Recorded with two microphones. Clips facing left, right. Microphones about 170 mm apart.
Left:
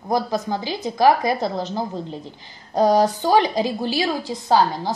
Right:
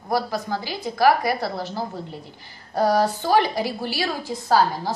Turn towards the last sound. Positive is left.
turn(degrees=20)  # may be behind; listen again after turning